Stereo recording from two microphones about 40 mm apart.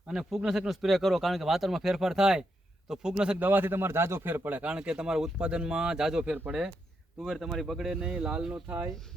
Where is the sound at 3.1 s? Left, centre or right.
Right.